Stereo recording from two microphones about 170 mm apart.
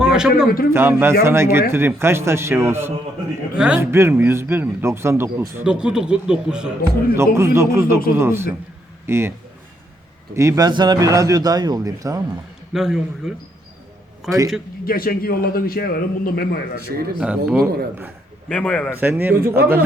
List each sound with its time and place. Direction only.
0.0 s a sound: 5° right (ahead or behind)
0.4 s a man's voice: 60° left (ahead or behind)
0.7 s a man's voice: 15° right (ahead or behind)
7.2 s a man's voice: 15° right (ahead or behind)
10.3 s a man's voice: 15° right (ahead or behind)
12.7 s a man's voice: 5° right (ahead or behind)
14.3 s speech: 20° right (ahead or behind)
14.8 s a man's voice: 60° left (ahead or behind)
17.2 s a man's voice: 5° right (ahead or behind)
18.4 s speech: 5° left (ahead or behind)
18.9 s a man's voice: 10° right (ahead or behind)
19.4 s speech: 60° right (ahead or behind)